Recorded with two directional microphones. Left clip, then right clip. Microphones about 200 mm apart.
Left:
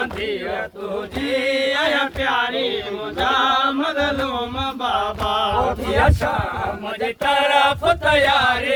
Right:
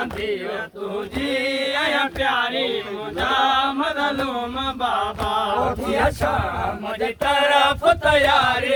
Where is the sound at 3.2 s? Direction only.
20° right (ahead or behind).